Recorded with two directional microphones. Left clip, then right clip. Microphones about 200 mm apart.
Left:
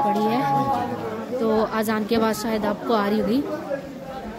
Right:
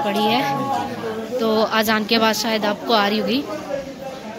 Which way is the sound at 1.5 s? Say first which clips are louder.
Right 5 dB; 5° left (ahead or behind).